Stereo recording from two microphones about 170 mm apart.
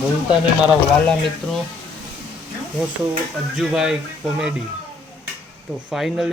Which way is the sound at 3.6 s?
5° right (ahead or behind).